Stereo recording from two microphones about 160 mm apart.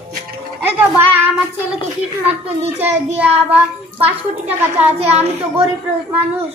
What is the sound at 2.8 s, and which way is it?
Speech, 10° right (ahead or behind).